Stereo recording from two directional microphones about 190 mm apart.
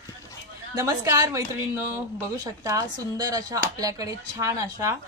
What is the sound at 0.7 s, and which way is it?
A woman's voice, 20° right (ahead or behind).